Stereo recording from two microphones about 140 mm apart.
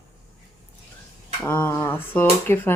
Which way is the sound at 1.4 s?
15° left (ahead or behind).